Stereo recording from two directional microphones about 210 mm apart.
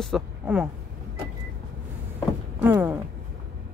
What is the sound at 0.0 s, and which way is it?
Speech, centre (ahead or behind).